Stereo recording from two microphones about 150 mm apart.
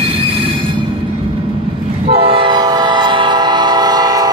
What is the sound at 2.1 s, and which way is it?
Train, 40° right (ahead or behind).